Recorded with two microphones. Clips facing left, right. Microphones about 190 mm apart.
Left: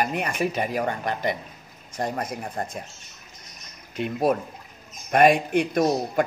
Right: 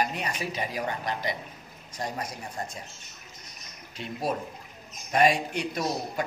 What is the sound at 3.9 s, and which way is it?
A man's voice, 55° left (ahead or behind).